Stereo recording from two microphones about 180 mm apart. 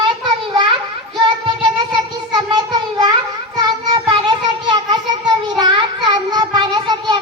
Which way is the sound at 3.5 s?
25° right (ahead or behind).